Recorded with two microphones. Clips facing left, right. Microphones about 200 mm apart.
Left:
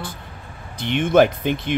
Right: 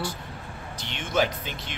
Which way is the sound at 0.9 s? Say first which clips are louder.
Left 11 dB; 55° left (ahead or behind).